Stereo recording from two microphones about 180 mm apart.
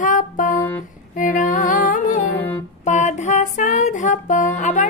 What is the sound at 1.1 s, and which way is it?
Music, 45° left (ahead or behind).